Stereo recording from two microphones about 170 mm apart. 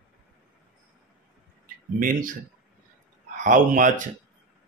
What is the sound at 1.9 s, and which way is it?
Speech, 55° right (ahead or behind).